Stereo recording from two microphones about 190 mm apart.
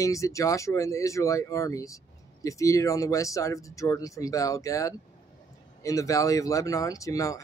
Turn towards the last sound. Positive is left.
turn(degrees=15)  # may be behind; listen again after turning